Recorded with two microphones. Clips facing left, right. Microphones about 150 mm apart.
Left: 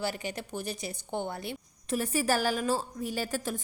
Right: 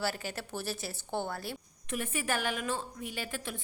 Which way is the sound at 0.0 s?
15° left (ahead or behind).